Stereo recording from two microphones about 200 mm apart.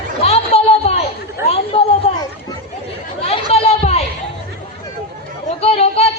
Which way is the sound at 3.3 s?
30° left (ahead or behind).